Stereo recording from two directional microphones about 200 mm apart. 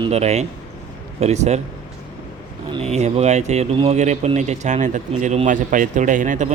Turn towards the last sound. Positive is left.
turn(degrees=-40)  # may be behind; listen again after turning